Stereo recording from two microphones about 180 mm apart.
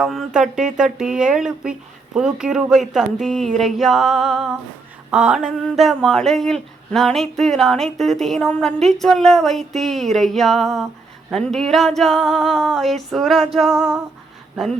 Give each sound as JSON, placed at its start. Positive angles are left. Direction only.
{"t": 0.0, "sound": "speech", "side_deg": 0}